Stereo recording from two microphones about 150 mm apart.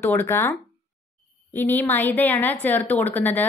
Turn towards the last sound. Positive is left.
turn(degrees=10)  # may be behind; listen again after turning